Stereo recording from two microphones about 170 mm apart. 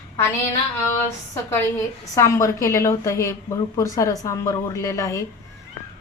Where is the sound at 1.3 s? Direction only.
15° left (ahead or behind).